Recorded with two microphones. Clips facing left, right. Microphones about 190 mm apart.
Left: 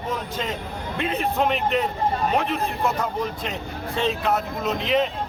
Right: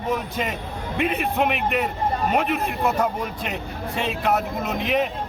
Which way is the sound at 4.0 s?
10° right (ahead or behind).